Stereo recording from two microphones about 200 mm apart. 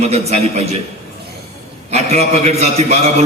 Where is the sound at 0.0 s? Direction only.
30° right (ahead or behind).